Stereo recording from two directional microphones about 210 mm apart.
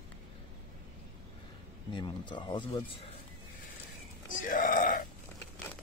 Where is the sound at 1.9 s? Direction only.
20° left (ahead or behind).